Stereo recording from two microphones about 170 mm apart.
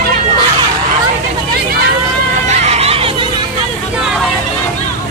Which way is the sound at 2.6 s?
35° right (ahead or behind).